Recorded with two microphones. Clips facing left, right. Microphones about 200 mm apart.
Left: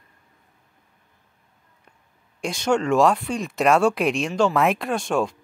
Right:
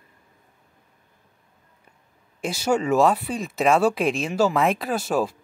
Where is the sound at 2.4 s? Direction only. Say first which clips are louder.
Left 1 dB; 5° right (ahead or behind).